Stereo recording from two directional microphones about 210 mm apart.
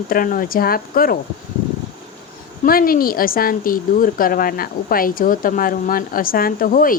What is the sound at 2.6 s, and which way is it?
A woman's voice, 45° left (ahead or behind).